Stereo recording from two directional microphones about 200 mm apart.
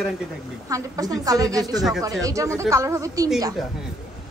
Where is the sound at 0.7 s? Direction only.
15° right (ahead or behind).